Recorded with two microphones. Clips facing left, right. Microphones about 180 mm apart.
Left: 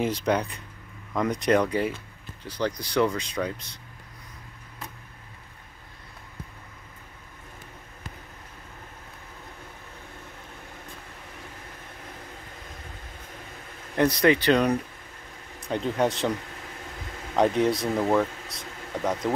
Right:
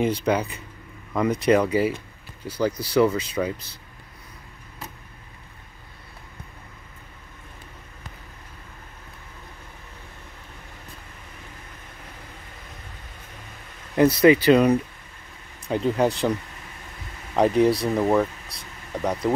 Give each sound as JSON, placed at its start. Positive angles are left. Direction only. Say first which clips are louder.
{"t": 0.0, "sound": "speech", "louder": "right 3 dB", "side_deg": 0}
{"t": 13.9, "sound": "speech", "louder": "right 5 dB", "side_deg": -5}
{"t": 17.4, "sound": "speech", "louder": "right 3 dB", "side_deg": 0}